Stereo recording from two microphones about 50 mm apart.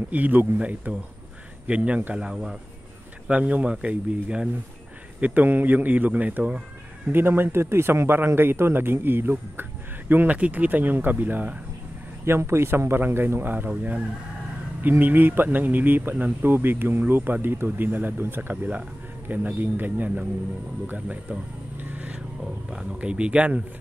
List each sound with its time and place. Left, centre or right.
0.1 s speech: right; by 2.5 s centre
3.3 s speech: right
5.2 s speech: right
7.1 s a man's voice: right
10.2 s speech: right
12.3 s speech: right
20.8 s a sound: right
22.7 s speech: centre
22.9 s speech: right